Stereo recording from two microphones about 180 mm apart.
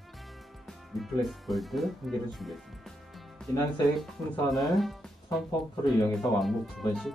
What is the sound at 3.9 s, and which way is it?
Speech, centre (ahead or behind).